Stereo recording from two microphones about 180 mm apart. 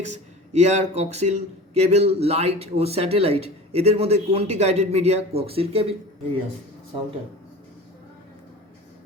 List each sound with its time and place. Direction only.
0.0 s speech: 40° right (ahead or behind)